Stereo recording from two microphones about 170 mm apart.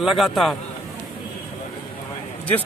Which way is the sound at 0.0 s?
Centre (ahead or behind).